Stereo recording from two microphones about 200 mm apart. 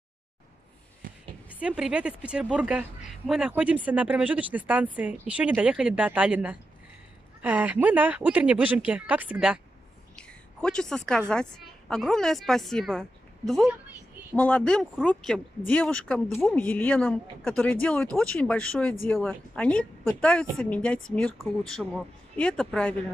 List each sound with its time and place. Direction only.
1.0 s a sound: 45° right (ahead or behind)
1.6 s a woman's voice: 5° right (ahead or behind)
10.1 s a woman's voice: 5° left (ahead or behind)